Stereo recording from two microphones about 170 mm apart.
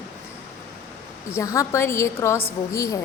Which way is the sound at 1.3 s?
20° left (ahead or behind).